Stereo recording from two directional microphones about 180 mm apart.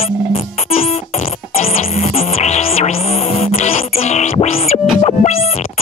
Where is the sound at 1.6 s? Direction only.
35° left (ahead or behind).